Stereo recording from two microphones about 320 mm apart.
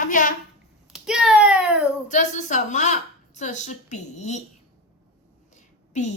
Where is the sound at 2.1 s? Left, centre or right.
Left.